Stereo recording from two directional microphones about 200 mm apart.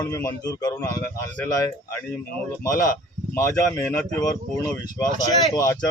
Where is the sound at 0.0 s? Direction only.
15° left (ahead or behind).